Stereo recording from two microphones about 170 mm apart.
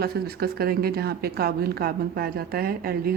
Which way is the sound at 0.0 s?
65° right (ahead or behind).